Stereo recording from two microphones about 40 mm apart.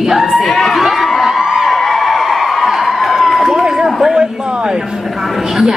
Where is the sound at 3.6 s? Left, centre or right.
Centre.